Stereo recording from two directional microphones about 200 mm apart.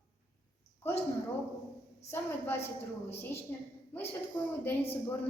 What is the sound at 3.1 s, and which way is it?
A woman's voice, 10° left (ahead or behind).